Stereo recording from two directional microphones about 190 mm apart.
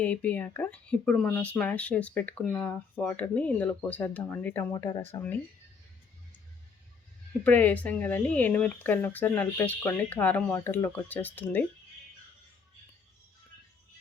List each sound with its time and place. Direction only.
0.0 s speech: 5° left (ahead or behind)
7.4 s speech: 10° left (ahead or behind)